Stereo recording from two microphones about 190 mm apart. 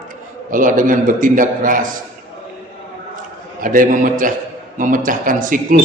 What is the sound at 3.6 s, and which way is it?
A man's voice, 45° right (ahead or behind).